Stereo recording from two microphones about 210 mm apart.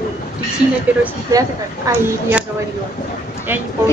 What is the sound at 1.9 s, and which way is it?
Speech, 15° right (ahead or behind).